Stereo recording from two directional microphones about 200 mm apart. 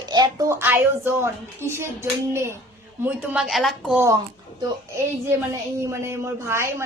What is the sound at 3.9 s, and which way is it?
Speech, 15° right (ahead or behind).